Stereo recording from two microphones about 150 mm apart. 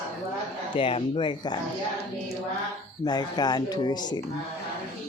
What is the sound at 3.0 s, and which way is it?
Speech, 30° left (ahead or behind).